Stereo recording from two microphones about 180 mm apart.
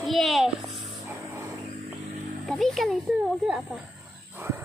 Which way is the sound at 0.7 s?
20° right (ahead or behind).